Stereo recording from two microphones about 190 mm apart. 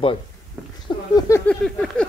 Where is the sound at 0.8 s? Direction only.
20° left (ahead or behind).